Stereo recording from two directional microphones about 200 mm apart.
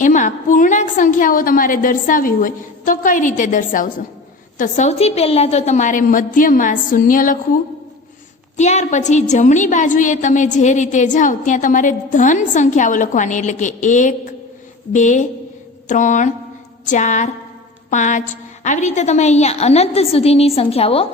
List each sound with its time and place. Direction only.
0.0 s a woman's voice: 40° left (ahead or behind)